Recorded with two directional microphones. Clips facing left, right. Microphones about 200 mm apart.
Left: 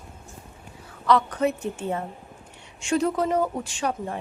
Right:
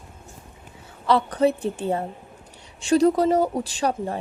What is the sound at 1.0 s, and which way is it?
A woman's voice, 30° right (ahead or behind).